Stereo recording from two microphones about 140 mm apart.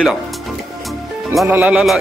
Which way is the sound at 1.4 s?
10° right (ahead or behind).